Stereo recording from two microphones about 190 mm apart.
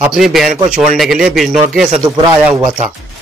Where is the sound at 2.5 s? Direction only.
15° right (ahead or behind).